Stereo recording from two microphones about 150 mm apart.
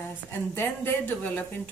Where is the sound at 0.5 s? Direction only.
15° left (ahead or behind).